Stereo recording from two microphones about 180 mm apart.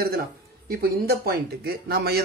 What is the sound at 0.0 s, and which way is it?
Speech, 55° right (ahead or behind).